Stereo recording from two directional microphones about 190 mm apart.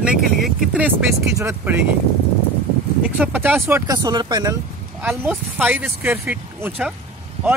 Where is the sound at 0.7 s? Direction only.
10° right (ahead or behind).